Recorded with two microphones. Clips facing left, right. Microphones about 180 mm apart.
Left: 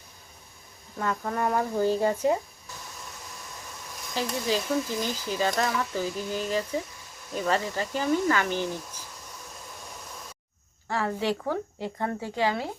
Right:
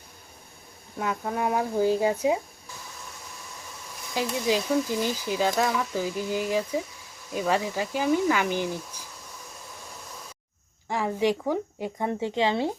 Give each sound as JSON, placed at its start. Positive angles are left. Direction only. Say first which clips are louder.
{"t": 0.9, "sound": "speech", "louder": "even", "side_deg": -10}
{"t": 4.1, "sound": "speech", "louder": "right 2 dB", "side_deg": -10}
{"t": 10.8, "sound": "speech", "louder": "right 3 dB", "side_deg": -15}